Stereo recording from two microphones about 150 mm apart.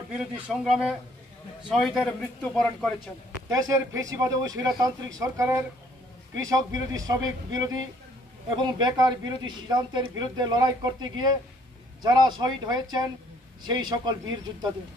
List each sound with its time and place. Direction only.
0.1 s a man's voice: 5° right (ahead or behind)
3.4 s speech: 20° right (ahead or behind)